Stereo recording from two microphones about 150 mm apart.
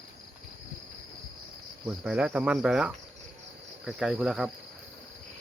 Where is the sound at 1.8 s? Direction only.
5° right (ahead or behind).